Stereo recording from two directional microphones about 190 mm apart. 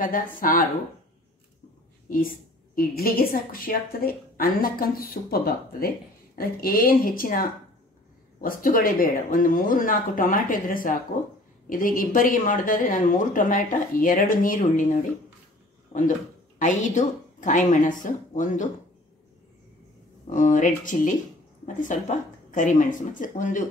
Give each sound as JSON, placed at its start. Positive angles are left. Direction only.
{"t": 0.0, "sound": "speech", "side_deg": 45}
{"t": 2.7, "sound": "speech", "side_deg": 50}
{"t": 20.2, "sound": "speech", "side_deg": 40}